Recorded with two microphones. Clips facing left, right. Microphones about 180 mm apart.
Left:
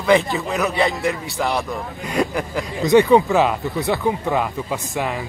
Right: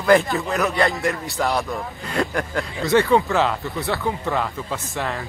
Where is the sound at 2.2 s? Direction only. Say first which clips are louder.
Left 3 dB; 15° left (ahead or behind).